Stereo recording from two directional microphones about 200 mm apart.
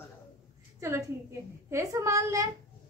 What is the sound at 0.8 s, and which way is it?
A woman's voice, 15° right (ahead or behind).